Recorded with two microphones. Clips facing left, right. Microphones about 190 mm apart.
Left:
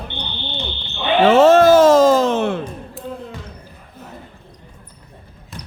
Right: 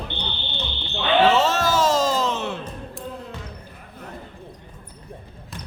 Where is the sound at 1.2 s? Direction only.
50° left (ahead or behind).